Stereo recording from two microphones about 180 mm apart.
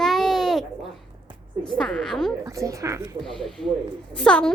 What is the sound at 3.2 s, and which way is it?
A child's voice, centre (ahead or behind).